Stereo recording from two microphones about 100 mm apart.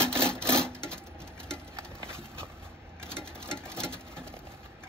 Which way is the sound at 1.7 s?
25° right (ahead or behind).